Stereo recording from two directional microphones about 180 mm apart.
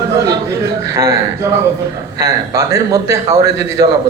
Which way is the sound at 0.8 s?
15° right (ahead or behind).